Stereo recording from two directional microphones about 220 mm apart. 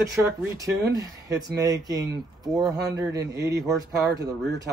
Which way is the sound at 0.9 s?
15° right (ahead or behind).